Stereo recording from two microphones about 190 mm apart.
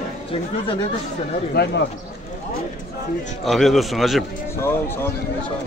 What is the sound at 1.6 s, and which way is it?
Speech, 60° left (ahead or behind).